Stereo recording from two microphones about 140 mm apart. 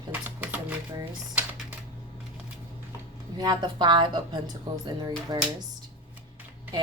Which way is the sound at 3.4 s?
30° right (ahead or behind).